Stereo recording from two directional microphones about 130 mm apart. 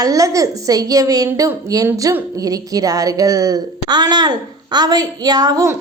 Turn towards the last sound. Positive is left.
turn(degrees=-30)  # may be behind; listen again after turning